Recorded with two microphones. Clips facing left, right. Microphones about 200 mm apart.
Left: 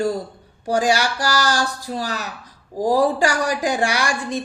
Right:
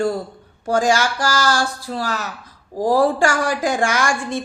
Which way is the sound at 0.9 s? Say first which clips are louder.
Right 1 dB; 40° left (ahead or behind).